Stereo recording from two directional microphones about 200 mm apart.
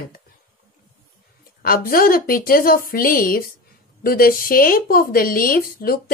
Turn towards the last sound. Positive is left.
turn(degrees=45)  # may be behind; listen again after turning